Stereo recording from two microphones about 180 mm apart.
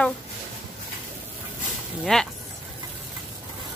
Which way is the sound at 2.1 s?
Centre (ahead or behind).